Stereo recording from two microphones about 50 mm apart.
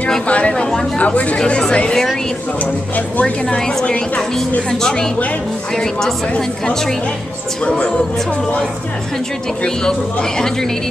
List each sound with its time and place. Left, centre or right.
0.3 s speech: left
0.9 s speech: left
3.5 s speech: centre
7.6 s speech: left
9.8 s speech: centre